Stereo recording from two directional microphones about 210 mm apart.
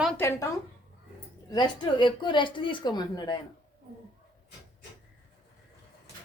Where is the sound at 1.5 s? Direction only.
20° left (ahead or behind).